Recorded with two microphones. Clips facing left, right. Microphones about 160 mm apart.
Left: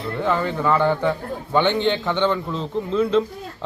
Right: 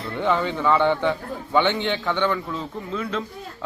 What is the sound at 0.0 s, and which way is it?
A man's voice, 5° left (ahead or behind).